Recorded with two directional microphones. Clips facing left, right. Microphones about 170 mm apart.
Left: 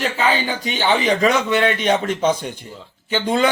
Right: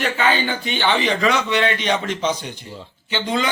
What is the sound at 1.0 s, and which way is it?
A man's voice, 45° left (ahead or behind).